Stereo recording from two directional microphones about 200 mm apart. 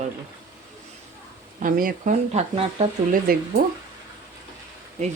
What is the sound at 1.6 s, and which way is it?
Speech, 45° right (ahead or behind).